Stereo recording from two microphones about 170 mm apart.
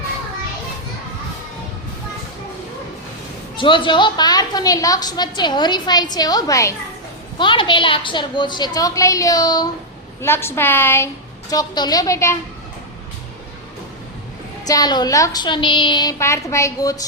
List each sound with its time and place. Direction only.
3.6 s a woman's voice: 30° left (ahead or behind)
7.3 s a woman's voice: 30° left (ahead or behind)
14.7 s a woman's voice: 25° left (ahead or behind)